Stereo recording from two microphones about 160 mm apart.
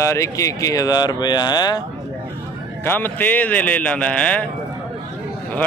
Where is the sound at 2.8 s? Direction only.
10° left (ahead or behind).